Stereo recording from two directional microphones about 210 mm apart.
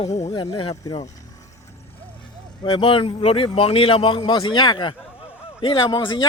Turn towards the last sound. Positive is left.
turn(degrees=25)  # may be behind; listen again after turning